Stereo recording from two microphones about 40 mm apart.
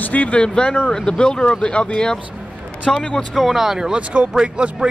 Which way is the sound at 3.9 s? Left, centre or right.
Right.